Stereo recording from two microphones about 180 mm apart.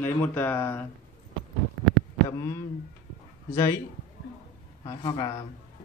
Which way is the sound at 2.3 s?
15° left (ahead or behind).